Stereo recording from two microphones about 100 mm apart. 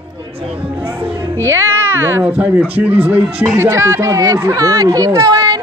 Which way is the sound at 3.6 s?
25° right (ahead or behind).